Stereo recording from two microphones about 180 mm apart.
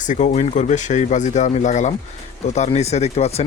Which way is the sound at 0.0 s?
45° left (ahead or behind).